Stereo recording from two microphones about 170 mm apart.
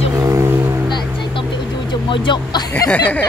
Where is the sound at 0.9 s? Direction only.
25° left (ahead or behind).